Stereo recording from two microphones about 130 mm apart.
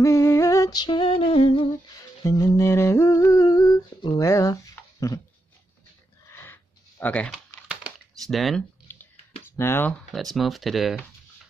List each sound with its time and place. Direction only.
0.0 s music: 20° left (ahead or behind); by 1.7 s 45° left (ahead or behind)
2.2 s humming: 25° left (ahead or behind)
4.2 s a sound: 25° left (ahead or behind)
6.2 s a sound: 20° left (ahead or behind)
7.6 s typing: 5° right (ahead or behind)
8.9 s whispering: 15° left (ahead or behind)
9.4 s speech: 15° left (ahead or behind)
10.1 s speech: centre (ahead or behind)